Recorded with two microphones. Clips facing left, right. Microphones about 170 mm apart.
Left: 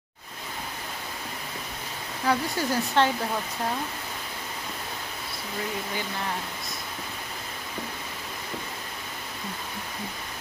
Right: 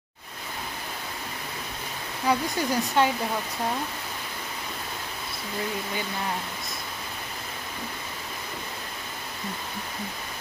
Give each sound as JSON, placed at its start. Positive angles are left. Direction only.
{"t": 2.2, "sound": "speech", "side_deg": -15}